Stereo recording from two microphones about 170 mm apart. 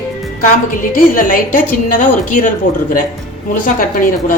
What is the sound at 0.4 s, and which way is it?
A woman's voice, 55° left (ahead or behind).